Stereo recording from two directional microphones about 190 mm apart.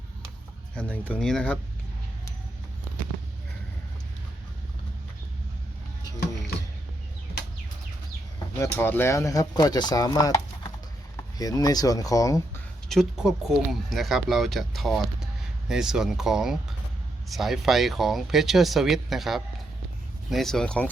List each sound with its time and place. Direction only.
0.8 s speech: 5° left (ahead or behind)
8.5 s speech: 15° left (ahead or behind)
12.9 s speech: centre (ahead or behind)